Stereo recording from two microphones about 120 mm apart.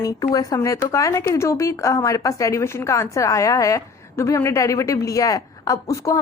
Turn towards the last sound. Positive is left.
turn(degrees=25)  # may be behind; listen again after turning